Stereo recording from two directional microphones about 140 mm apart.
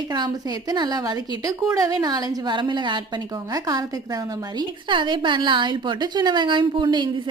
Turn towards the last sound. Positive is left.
turn(degrees=-35)  # may be behind; listen again after turning